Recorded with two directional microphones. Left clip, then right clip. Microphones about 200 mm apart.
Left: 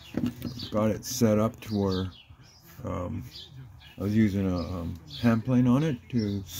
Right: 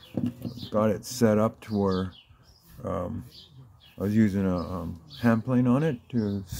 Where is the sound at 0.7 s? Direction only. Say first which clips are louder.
Right 3 dB; 10° right (ahead or behind).